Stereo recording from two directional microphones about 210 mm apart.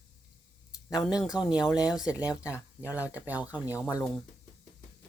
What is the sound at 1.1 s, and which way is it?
Speech, 5° right (ahead or behind).